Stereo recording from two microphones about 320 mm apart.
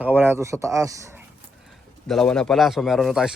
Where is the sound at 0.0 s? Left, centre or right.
Centre.